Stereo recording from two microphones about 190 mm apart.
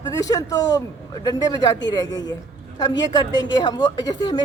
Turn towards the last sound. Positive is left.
turn(degrees=20)  # may be behind; listen again after turning